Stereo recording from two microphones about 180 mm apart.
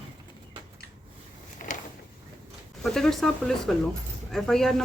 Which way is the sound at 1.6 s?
50° left (ahead or behind).